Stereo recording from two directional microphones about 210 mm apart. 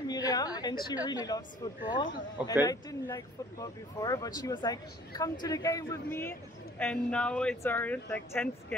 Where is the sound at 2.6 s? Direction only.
15° left (ahead or behind).